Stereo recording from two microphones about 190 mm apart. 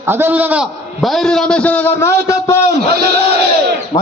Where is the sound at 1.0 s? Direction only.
Centre (ahead or behind).